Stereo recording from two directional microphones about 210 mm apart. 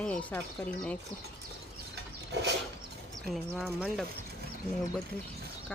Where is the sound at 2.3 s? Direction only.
55° right (ahead or behind).